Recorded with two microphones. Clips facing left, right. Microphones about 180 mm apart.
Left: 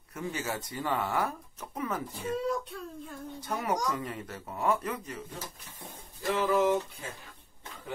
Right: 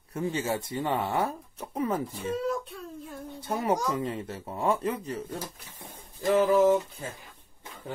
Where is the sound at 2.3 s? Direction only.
Centre (ahead or behind).